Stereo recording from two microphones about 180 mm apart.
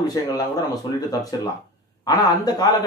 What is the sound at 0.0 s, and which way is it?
Speech, 20° left (ahead or behind).